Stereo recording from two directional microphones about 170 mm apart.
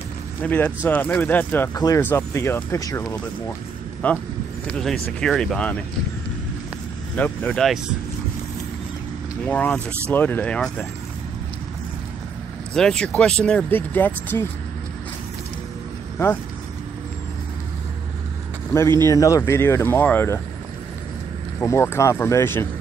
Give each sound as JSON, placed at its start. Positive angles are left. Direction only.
{"t": 0.4, "sound": "speech", "side_deg": 10}
{"t": 4.0, "sound": "speech", "side_deg": 10}
{"t": 7.2, "sound": "speech", "side_deg": 10}
{"t": 9.4, "sound": "speech", "side_deg": 5}
{"t": 12.7, "sound": "speech", "side_deg": 5}
{"t": 18.7, "sound": "speech", "side_deg": 15}
{"t": 21.5, "sound": "speech", "side_deg": 15}